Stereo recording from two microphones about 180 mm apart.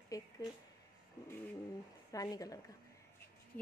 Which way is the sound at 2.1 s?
20° left (ahead or behind).